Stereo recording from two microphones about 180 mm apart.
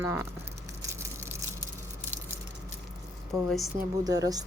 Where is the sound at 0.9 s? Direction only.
15° right (ahead or behind).